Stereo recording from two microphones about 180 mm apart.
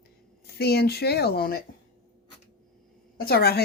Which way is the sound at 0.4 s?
65° left (ahead or behind).